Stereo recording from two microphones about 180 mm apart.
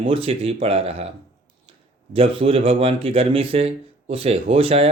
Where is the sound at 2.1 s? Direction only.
30° right (ahead or behind).